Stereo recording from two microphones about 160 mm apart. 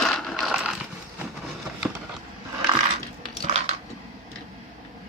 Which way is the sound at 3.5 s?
40° right (ahead or behind).